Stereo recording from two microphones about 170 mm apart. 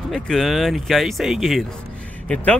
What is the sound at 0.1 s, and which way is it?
Speech, centre (ahead or behind).